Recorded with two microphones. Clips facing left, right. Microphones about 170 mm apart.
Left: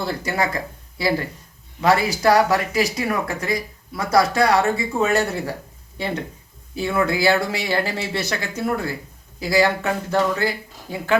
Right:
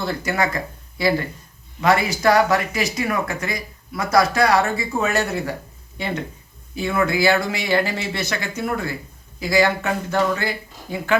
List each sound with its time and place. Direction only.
0.0 s speech: 30° left (ahead or behind)
6.7 s speech: 35° left (ahead or behind)